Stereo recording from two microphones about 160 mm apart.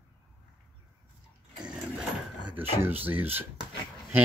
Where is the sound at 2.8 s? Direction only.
10° right (ahead or behind).